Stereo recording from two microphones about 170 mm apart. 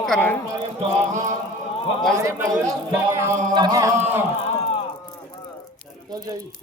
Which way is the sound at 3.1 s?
20° right (ahead or behind).